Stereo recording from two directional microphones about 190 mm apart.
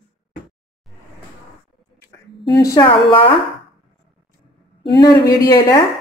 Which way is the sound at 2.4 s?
20° left (ahead or behind).